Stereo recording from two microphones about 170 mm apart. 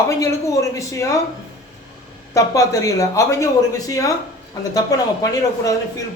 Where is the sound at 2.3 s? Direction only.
20° left (ahead or behind).